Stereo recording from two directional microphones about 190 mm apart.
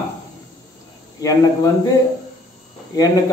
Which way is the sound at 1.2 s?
20° left (ahead or behind).